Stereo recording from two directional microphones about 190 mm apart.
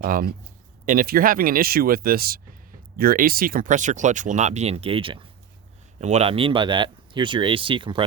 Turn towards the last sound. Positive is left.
turn(degrees=-25)  # may be behind; listen again after turning